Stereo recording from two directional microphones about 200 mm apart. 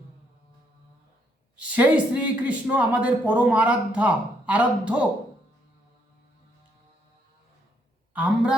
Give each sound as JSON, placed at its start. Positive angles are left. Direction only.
{"t": 1.7, "sound": "speech", "side_deg": -10}
{"t": 8.1, "sound": "a man's voice", "side_deg": -5}